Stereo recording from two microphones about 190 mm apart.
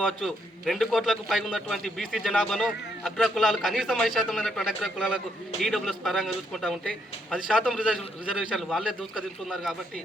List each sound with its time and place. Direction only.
0.0 s a man's voice: centre (ahead or behind)